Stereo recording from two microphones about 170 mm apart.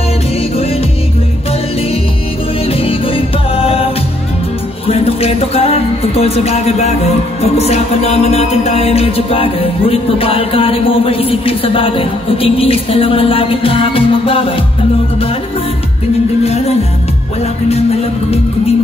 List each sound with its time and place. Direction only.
2.8 s music: 35° left (ahead or behind)
16.4 s music: 40° left (ahead or behind)